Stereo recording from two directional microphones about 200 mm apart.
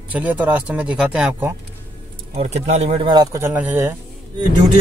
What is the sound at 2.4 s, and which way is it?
Speech, 35° right (ahead or behind).